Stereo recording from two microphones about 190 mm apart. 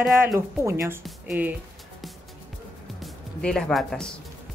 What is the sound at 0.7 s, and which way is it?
Speech, 15° right (ahead or behind).